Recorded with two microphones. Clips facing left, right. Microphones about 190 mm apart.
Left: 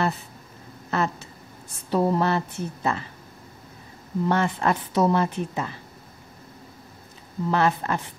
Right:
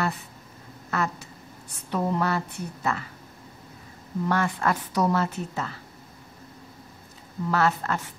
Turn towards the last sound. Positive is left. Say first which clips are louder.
# left 2 dB
turn(degrees=15)  # may be behind; listen again after turning